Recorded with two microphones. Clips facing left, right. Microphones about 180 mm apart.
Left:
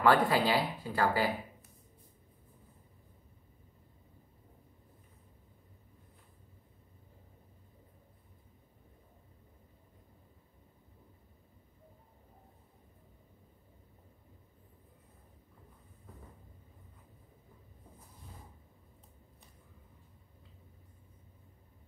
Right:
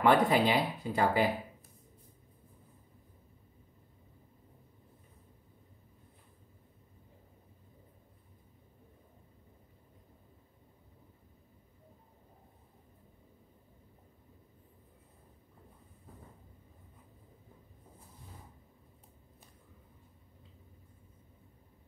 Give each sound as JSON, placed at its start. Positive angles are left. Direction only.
{"t": 0.0, "sound": "speech", "side_deg": -20}